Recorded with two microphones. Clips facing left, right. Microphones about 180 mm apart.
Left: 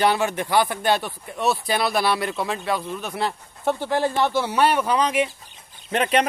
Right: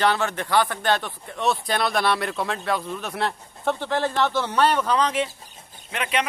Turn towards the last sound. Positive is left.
turn(degrees=40)  # may be behind; listen again after turning